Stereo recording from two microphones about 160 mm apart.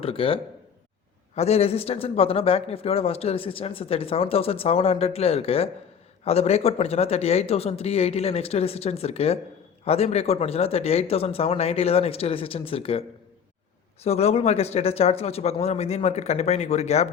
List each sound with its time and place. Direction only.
0.0 s a man's voice: 35° left (ahead or behind)
1.4 s a man's voice: 40° left (ahead or behind)